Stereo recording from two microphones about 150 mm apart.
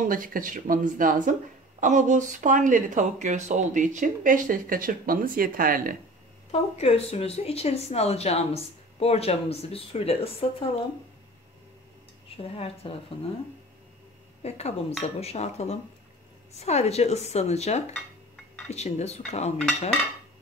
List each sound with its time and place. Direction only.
0.0 s speech: 65° right (ahead or behind)
6.5 s speech: 40° left (ahead or behind)
12.4 s speech: 40° left (ahead or behind)
14.4 s speech: 45° left (ahead or behind)
17.9 s dishes: 5° left (ahead or behind)
18.7 s speech: 45° left (ahead or behind)